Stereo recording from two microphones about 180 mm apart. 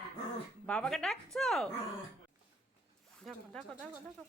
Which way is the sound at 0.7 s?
5° left (ahead or behind).